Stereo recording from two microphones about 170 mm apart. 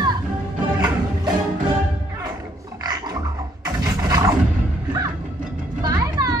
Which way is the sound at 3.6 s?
20° right (ahead or behind).